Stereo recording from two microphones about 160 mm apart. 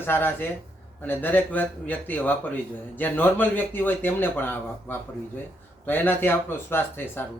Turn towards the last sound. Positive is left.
turn(degrees=15)  # may be behind; listen again after turning